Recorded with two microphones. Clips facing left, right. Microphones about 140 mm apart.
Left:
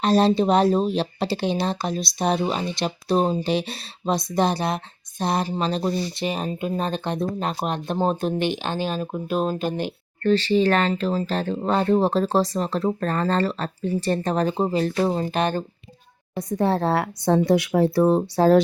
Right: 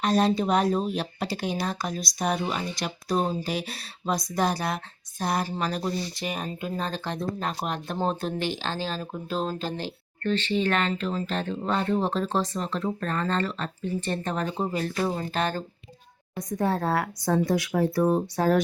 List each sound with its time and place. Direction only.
0.0 s speech: 30° left (ahead or behind)
10.2 s speech: 35° left (ahead or behind); by 15.6 s 20° left (ahead or behind)
16.3 s speech: 30° left (ahead or behind)